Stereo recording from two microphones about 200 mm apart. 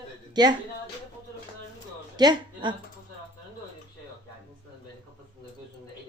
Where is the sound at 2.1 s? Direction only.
20° right (ahead or behind).